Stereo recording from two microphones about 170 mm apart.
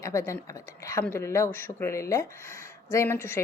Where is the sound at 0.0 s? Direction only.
15° left (ahead or behind).